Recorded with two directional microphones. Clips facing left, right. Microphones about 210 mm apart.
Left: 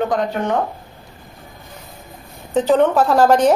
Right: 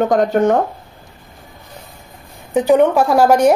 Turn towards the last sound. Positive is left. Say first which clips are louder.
# right 2 dB
turn(degrees=-10)  # may be behind; listen again after turning